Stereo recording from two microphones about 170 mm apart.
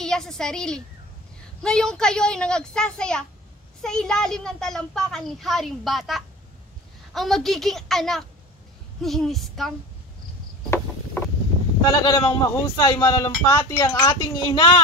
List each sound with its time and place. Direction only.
0.0 s a woman's voice: 5° left (ahead or behind)
11.8 s speech: 25° left (ahead or behind)